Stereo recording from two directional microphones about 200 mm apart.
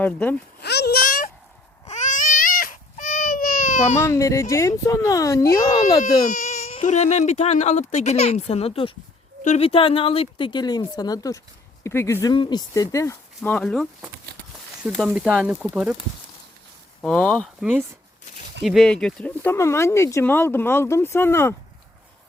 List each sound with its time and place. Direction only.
0.0 s speech: 10° left (ahead or behind)
0.6 s a sound: 55° left (ahead or behind)
1.9 s baby cry: 40° left (ahead or behind)
3.9 s speech: 15° left (ahead or behind)
6.2 s speech: 40° left (ahead or behind); by 13.8 s 5° left (ahead or behind)
14.9 s speech: centre (ahead or behind)
17.0 s speech: 5° left (ahead or behind)